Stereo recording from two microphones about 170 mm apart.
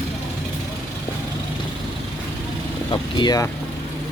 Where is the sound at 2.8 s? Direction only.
25° left (ahead or behind).